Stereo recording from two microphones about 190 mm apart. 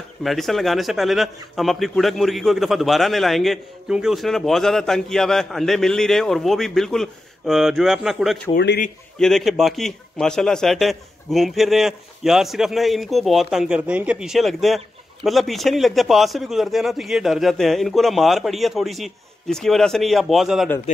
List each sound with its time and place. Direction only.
0.2 s a man's voice: centre (ahead or behind)
8.5 s a man's voice: 60° left (ahead or behind)
9.2 s a man's voice: centre (ahead or behind)